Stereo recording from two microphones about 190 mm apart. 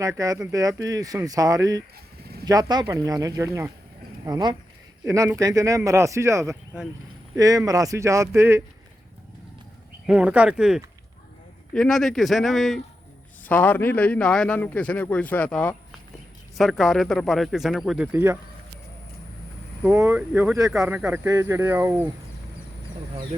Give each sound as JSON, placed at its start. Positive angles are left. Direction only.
{"t": 0.0, "sound": "speech", "side_deg": -20}
{"t": 10.1, "sound": "a man's voice", "side_deg": -5}
{"t": 19.8, "sound": "speech", "side_deg": -10}